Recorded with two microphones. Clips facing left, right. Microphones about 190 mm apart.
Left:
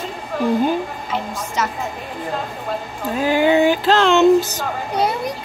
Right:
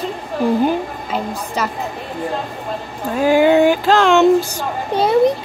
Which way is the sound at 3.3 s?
5° right (ahead or behind).